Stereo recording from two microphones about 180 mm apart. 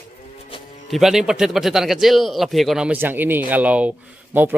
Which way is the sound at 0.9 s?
Centre (ahead or behind).